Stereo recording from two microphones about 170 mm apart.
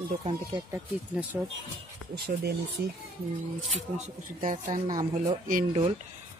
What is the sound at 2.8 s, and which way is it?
Speech, 80° right.